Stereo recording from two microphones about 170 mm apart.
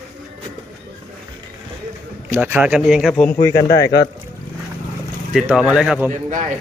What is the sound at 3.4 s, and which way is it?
Speech, 15° left (ahead or behind).